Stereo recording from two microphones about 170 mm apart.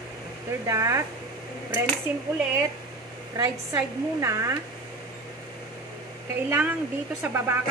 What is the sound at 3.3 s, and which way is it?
A woman's voice, 20° right (ahead or behind).